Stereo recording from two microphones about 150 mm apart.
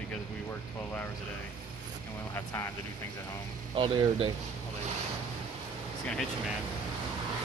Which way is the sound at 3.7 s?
35° right (ahead or behind).